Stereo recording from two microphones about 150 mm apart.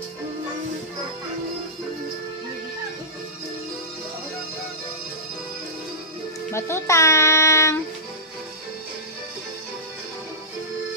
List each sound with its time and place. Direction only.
6.5 s speech: 20° left (ahead or behind)